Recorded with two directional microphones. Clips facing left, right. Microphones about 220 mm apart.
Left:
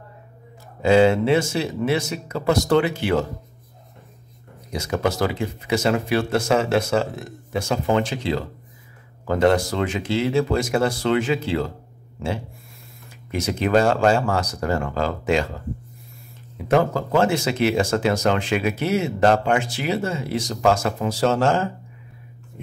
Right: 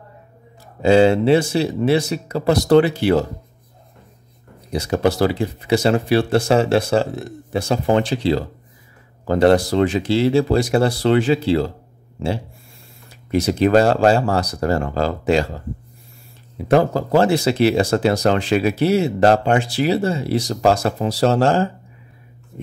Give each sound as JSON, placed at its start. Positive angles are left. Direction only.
{"t": 0.8, "sound": "speech", "side_deg": -30}
{"t": 4.7, "sound": "speech", "side_deg": -35}
{"t": 13.3, "sound": "speech", "side_deg": -35}
{"t": 16.6, "sound": "speech", "side_deg": -35}